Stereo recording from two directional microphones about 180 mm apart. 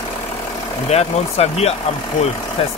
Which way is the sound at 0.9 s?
35° left (ahead or behind).